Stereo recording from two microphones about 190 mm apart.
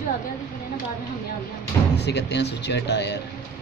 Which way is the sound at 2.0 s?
65° left (ahead or behind).